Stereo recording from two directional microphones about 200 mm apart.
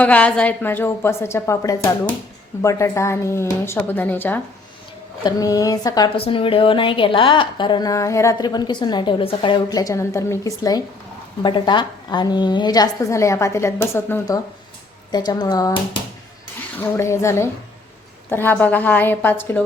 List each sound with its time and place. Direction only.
0.0 s a woman's voice: 5° left (ahead or behind)